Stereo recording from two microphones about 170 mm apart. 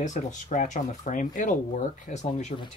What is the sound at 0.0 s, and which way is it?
Speech, 45° left (ahead or behind).